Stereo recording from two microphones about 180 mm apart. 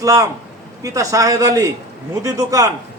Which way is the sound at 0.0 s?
20° right (ahead or behind).